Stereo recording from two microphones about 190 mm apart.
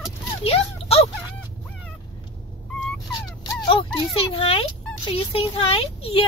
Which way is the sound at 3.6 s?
25° left (ahead or behind).